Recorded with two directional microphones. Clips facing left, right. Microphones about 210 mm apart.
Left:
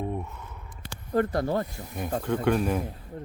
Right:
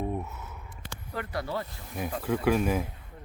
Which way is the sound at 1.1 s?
45° left (ahead or behind).